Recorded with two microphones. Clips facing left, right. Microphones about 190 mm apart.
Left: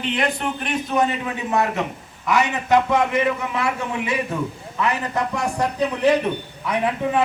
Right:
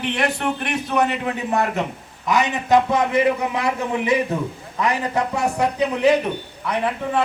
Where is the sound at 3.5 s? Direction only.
20° right (ahead or behind).